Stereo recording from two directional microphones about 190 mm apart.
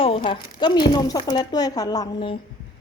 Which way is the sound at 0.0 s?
30° left (ahead or behind).